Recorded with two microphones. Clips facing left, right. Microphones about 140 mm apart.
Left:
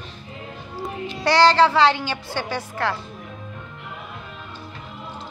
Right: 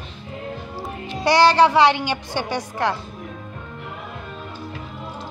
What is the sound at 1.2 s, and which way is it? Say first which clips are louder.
A woman's voice: right 1 dB; 15° right (ahead or behind).